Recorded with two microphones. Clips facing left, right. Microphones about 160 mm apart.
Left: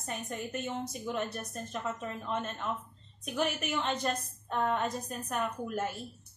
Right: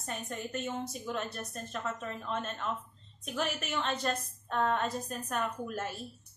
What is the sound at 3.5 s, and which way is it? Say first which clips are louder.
A woman's voice: left 1 dB; 15° left (ahead or behind).